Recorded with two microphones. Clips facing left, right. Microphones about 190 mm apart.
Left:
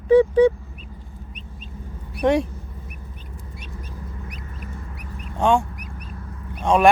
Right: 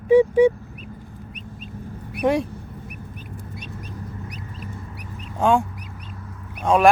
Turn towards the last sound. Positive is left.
turn(degrees=0)  # may be behind; listen again after turning